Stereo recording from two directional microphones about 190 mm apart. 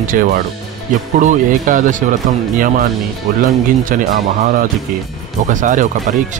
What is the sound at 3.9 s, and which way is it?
Speech, 45° right (ahead or behind).